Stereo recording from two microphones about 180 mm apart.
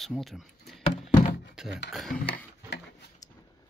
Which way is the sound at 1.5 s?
5° right (ahead or behind).